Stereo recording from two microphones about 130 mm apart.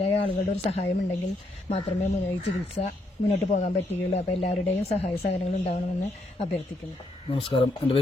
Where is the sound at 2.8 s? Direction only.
45° left (ahead or behind).